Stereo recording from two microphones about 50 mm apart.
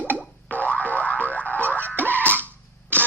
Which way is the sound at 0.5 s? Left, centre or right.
Left.